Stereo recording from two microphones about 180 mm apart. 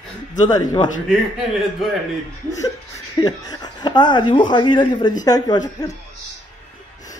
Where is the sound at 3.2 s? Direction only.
20° left (ahead or behind).